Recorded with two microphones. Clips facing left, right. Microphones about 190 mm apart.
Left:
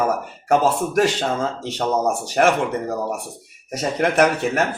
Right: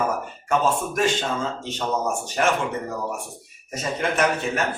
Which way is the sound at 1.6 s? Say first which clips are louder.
Left 7 dB; 75° left (ahead or behind).